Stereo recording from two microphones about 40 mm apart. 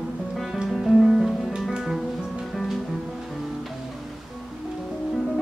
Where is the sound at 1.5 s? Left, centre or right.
Right.